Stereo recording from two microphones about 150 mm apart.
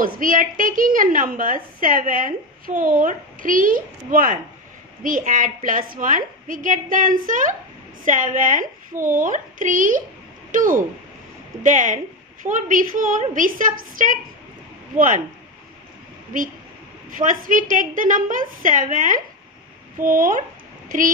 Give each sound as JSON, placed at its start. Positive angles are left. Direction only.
{"t": 0.0, "sound": "a woman's voice", "side_deg": -65}
{"t": 17.2, "sound": "a woman's voice", "side_deg": -60}